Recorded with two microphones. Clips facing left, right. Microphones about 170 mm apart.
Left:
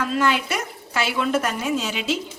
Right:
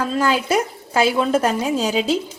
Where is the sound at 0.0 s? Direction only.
30° right (ahead or behind).